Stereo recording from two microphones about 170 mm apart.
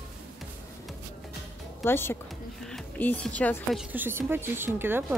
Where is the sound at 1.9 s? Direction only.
15° left (ahead or behind).